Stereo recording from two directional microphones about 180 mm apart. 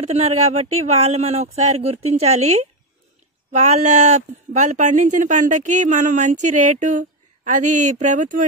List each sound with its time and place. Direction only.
0.0 s speech: 35° right (ahead or behind)